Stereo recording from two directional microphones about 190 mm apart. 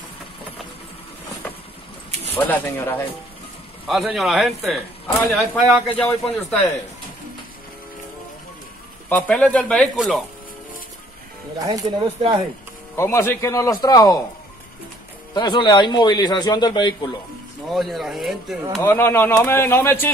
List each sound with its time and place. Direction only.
2.3 s a man's voice: 10° left (ahead or behind)
9.1 s a man's voice: 5° left (ahead or behind)
9.9 s speech: 5° right (ahead or behind)
11.6 s speech: 20° right (ahead or behind)
12.9 s a man's voice: 15° left (ahead or behind)
15.3 s a man's voice: 25° left (ahead or behind)
17.6 s speech: centre (ahead or behind)
18.8 s a man's voice: 10° left (ahead or behind)